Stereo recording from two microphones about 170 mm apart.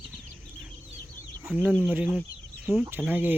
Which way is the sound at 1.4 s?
5° right (ahead or behind).